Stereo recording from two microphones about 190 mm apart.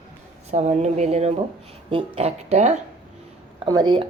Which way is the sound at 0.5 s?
40° right (ahead or behind).